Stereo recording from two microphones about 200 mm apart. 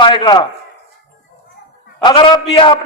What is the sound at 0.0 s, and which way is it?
Speech, 25° left (ahead or behind).